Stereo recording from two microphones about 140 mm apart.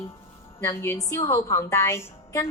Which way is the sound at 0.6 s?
20° left (ahead or behind).